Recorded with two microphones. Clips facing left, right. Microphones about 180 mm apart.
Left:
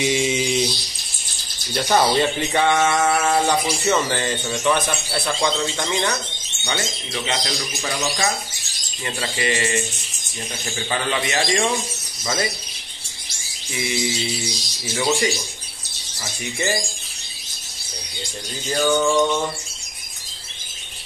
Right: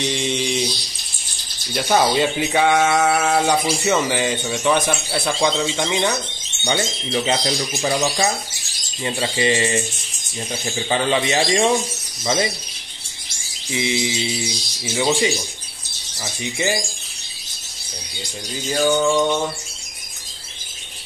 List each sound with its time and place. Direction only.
0.0 s mantra: 5° left (ahead or behind)
1.7 s speech: 5° right (ahead or behind)
6.6 s speech: 30° right (ahead or behind)
13.7 s speech: 20° right (ahead or behind)
16.5 s speech: 10° right (ahead or behind)
18.7 s mantra: centre (ahead or behind)